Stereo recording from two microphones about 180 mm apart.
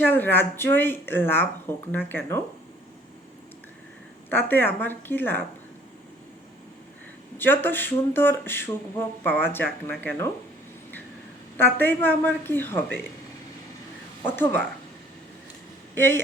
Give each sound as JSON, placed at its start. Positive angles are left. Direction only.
{"t": 0.0, "sound": "speech", "side_deg": 10}
{"t": 4.3, "sound": "speech", "side_deg": 10}
{"t": 7.3, "sound": "speech", "side_deg": 10}
{"t": 11.5, "sound": "speech", "side_deg": 10}
{"t": 14.3, "sound": "speech", "side_deg": 10}
{"t": 16.0, "sound": "speech", "side_deg": 15}